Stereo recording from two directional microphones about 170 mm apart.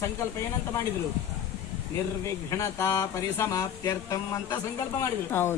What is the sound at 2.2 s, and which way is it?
Speech, 15° left (ahead or behind).